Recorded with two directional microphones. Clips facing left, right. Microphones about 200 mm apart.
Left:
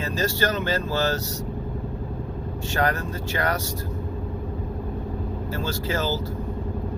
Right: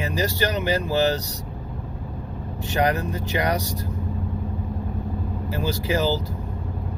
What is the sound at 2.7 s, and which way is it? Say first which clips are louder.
Speech: right 3 dB; 15° right (ahead or behind).